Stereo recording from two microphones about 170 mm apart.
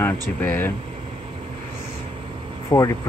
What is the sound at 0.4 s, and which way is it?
Speech, 10° left (ahead or behind).